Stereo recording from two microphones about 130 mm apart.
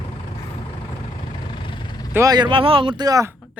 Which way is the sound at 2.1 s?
25° right (ahead or behind).